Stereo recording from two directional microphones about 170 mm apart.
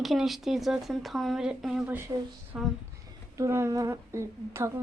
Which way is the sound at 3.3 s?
15° right (ahead or behind).